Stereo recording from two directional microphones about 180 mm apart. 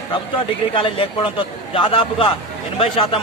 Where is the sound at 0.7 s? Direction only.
30° left (ahead or behind).